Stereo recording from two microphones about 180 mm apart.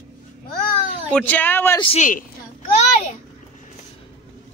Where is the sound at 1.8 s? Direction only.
30° left (ahead or behind).